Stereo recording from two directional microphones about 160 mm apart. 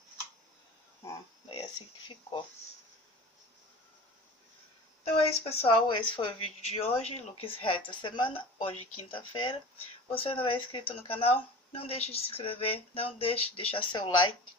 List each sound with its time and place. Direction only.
1.5 s speech: 30° left (ahead or behind)
5.0 s speech: 40° left (ahead or behind)